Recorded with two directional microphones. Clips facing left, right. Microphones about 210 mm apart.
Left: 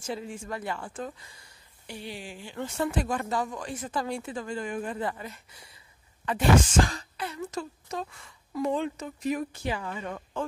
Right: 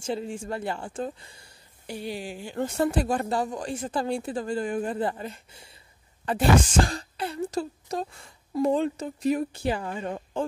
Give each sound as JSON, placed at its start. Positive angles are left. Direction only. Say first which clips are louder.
{"t": 0.0, "sound": "speech", "louder": "right 4 dB", "side_deg": -30}
{"t": 1.9, "sound": "speech", "louder": "right 6 dB", "side_deg": -40}
{"t": 6.9, "sound": "speech", "louder": "right 4 dB", "side_deg": -30}